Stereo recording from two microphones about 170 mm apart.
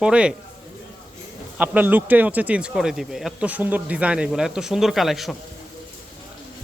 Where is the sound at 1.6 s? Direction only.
10° right (ahead or behind).